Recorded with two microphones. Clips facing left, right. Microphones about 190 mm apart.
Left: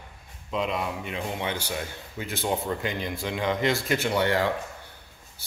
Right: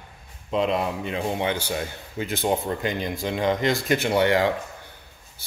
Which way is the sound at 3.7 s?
20° right (ahead or behind).